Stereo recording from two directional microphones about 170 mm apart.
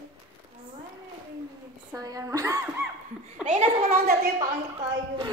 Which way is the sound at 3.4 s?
45° right (ahead or behind).